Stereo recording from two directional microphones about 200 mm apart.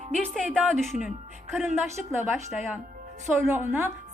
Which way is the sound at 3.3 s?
10° right (ahead or behind).